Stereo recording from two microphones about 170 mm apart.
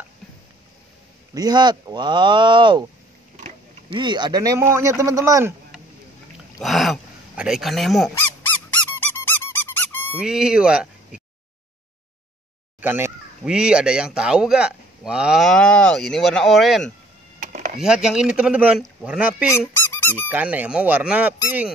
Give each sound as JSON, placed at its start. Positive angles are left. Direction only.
{"t": 1.3, "sound": "speech", "side_deg": -25}
{"t": 3.9, "sound": "speech", "side_deg": -25}
{"t": 6.6, "sound": "speech", "side_deg": 0}
{"t": 8.1, "sound": "squeak", "side_deg": 10}
{"t": 10.1, "sound": "speech", "side_deg": -5}
{"t": 12.8, "sound": "speech", "side_deg": -10}
{"t": 17.4, "sound": "a sound", "side_deg": -55}
{"t": 17.7, "sound": "speech", "side_deg": -5}
{"t": 19.8, "sound": "squeak", "side_deg": 10}
{"t": 20.2, "sound": "speech", "side_deg": -10}